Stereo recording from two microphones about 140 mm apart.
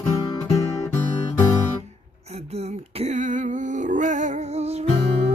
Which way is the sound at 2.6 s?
50° right (ahead or behind).